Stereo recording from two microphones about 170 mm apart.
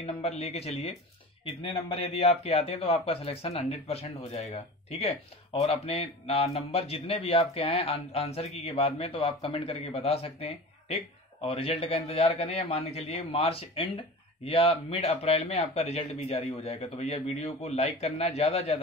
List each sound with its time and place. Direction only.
0.0 s a man's voice: 40° left (ahead or behind)